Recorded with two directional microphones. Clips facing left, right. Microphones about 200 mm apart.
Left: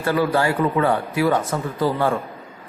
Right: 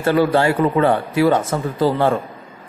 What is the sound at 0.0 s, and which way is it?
Speech, 25° right (ahead or behind).